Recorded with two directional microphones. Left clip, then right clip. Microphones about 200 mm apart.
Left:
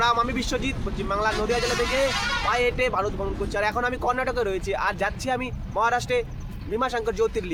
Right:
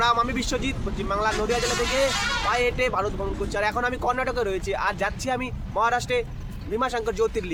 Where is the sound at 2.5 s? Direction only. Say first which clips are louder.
Left 1 dB; centre (ahead or behind).